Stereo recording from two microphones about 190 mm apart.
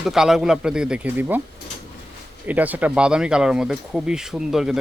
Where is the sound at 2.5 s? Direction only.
10° right (ahead or behind).